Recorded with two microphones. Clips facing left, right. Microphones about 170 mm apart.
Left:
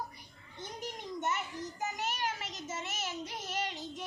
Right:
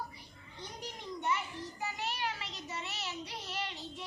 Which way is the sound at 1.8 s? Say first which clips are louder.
Left 2 dB; 45° left (ahead or behind).